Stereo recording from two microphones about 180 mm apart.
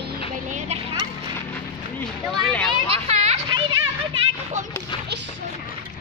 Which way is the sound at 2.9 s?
35° right (ahead or behind).